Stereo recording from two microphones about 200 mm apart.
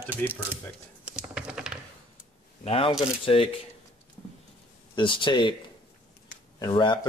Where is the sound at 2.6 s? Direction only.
25° left (ahead or behind).